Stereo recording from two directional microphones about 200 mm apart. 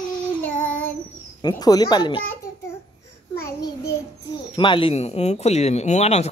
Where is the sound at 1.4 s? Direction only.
20° left (ahead or behind).